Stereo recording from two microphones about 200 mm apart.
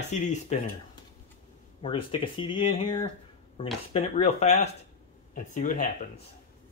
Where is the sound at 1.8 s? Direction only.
25° left (ahead or behind).